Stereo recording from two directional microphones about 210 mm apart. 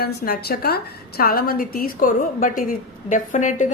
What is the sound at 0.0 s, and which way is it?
A woman's voice, 50° left (ahead or behind).